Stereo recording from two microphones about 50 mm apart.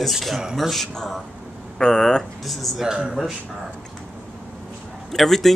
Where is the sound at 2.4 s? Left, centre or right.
Centre.